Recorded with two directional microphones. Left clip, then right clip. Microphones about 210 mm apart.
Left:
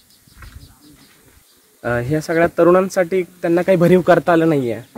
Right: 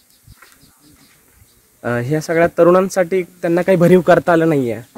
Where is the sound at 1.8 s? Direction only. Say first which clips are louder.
Right 1 dB; 45° right (ahead or behind).